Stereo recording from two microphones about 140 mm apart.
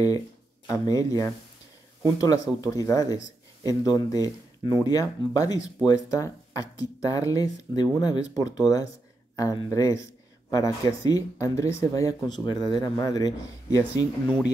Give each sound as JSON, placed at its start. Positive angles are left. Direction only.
{"t": 0.7, "sound": "speech", "side_deg": 25}